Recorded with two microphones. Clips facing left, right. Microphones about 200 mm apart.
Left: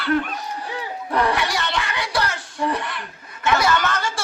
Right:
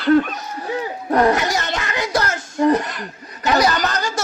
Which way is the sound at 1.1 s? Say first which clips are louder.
Right 5 dB; 45° right (ahead or behind).